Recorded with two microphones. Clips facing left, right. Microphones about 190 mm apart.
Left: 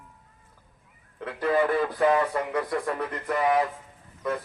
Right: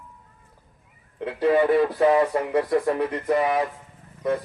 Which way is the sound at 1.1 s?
25° right (ahead or behind).